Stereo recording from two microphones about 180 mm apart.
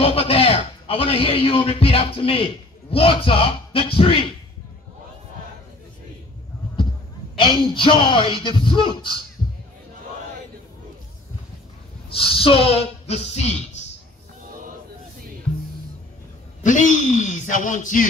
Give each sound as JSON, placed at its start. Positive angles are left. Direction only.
{"t": 0.0, "sound": "a man's voice", "side_deg": 30}
{"t": 7.3, "sound": "speech", "side_deg": 25}
{"t": 12.1, "sound": "a man's voice", "side_deg": 30}
{"t": 16.6, "sound": "speech", "side_deg": 45}